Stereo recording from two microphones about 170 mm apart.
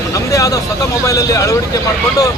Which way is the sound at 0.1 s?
20° left (ahead or behind).